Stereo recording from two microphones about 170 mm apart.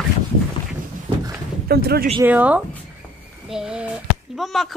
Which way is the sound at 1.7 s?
65° right (ahead or behind).